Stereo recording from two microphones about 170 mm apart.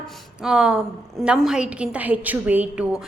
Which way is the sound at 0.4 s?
5° right (ahead or behind).